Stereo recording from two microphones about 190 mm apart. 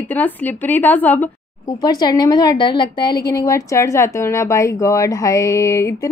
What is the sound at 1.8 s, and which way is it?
A woman's voice, 20° left (ahead or behind).